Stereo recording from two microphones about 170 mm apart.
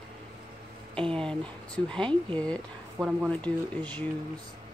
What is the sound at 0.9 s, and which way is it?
Speech, 5° left (ahead or behind).